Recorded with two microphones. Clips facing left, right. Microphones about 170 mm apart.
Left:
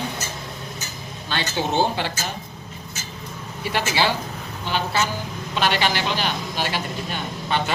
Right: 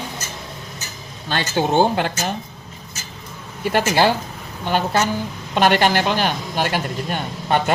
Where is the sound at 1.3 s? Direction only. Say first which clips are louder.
Right 5 dB; 50° right (ahead or behind).